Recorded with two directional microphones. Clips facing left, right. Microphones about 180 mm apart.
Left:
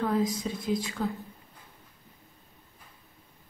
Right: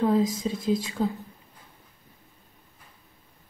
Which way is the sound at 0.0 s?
25° right (ahead or behind).